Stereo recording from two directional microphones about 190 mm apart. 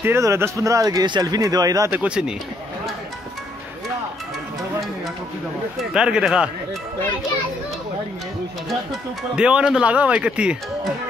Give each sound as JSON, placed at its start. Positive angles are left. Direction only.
{"t": 0.0, "sound": "speech", "side_deg": -15}
{"t": 5.8, "sound": "speech", "side_deg": -5}
{"t": 9.3, "sound": "speech", "side_deg": -5}